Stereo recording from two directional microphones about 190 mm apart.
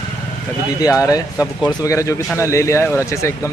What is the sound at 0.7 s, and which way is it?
Speech, 15° left (ahead or behind).